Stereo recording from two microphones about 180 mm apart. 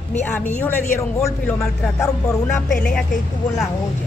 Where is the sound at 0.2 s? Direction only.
10° left (ahead or behind).